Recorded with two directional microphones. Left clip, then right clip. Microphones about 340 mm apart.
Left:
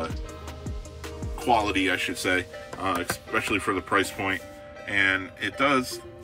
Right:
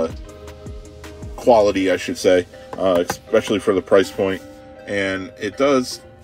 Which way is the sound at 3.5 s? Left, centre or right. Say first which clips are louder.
Right 8 dB; centre.